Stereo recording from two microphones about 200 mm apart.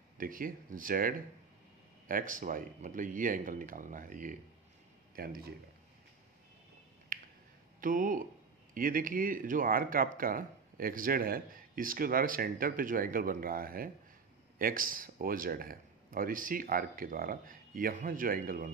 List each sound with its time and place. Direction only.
0.2 s speech: 45° right (ahead or behind)
7.1 s finger snapping: 45° right (ahead or behind)
7.8 s speech: 45° right (ahead or behind)